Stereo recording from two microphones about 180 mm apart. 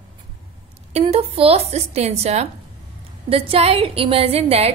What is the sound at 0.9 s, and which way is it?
A woman's voice, 35° right (ahead or behind).